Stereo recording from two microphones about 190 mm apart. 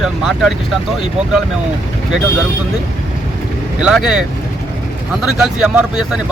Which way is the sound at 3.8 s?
Centre (ahead or behind).